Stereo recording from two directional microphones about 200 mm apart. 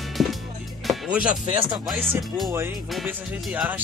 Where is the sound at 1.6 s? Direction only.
Centre (ahead or behind).